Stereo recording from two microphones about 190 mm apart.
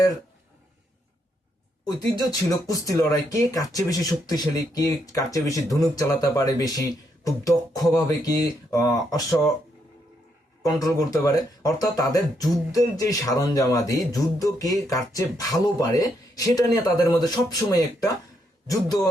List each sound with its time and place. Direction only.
1.8 s speech: 20° left (ahead or behind)
7.3 s beatboxing: 15° left (ahead or behind)
7.9 s speech: 20° left (ahead or behind)
10.6 s speech: 20° left (ahead or behind)